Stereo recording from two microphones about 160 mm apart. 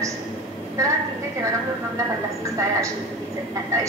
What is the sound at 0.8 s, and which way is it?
Speech, 20° right (ahead or behind).